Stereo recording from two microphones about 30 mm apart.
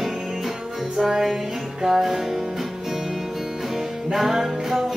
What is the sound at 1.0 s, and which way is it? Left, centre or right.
Music, centre.